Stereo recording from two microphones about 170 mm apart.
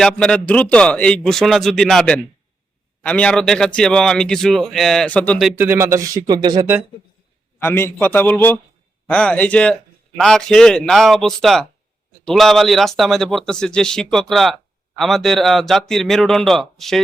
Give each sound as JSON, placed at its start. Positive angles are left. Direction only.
{"t": 0.0, "sound": "speech", "side_deg": 5}
{"t": 5.5, "sound": "speech", "side_deg": -10}
{"t": 7.6, "sound": "a man's voice", "side_deg": 10}